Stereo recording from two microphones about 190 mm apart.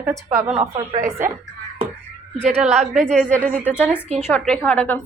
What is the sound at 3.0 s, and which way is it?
Speech, 5° left (ahead or behind).